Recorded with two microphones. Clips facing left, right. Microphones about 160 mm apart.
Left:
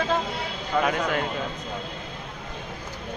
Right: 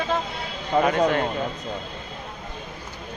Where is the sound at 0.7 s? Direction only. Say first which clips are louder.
Right 4 dB; 35° right (ahead or behind).